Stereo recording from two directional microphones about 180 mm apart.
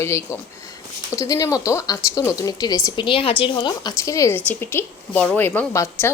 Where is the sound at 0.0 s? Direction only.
15° left (ahead or behind).